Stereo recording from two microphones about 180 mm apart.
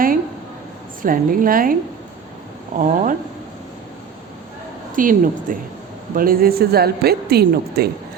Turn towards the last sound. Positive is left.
turn(degrees=-60)  # may be behind; listen again after turning